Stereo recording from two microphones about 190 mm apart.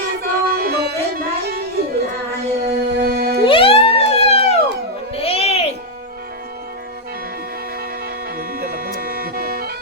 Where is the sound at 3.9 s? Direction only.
30° left (ahead or behind).